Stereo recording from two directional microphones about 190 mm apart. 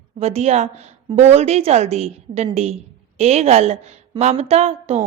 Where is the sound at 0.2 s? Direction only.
35° right (ahead or behind).